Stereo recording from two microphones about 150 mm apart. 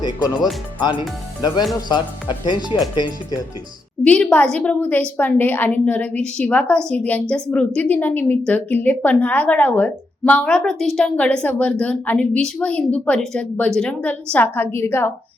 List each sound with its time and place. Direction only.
0.8 s speech: 30° left (ahead or behind)
4.0 s a woman's voice: 5° left (ahead or behind)